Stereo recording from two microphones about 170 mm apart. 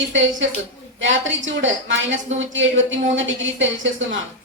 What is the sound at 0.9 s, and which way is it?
A woman's voice, 90° right.